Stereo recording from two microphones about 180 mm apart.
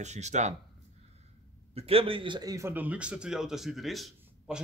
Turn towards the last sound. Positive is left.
turn(degrees=0)  # may be behind; listen again after turning